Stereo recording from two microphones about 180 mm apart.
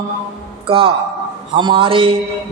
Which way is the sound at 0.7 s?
30° right (ahead or behind).